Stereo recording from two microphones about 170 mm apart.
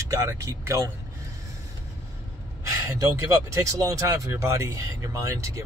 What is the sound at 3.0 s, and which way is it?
Speech, 20° right (ahead or behind).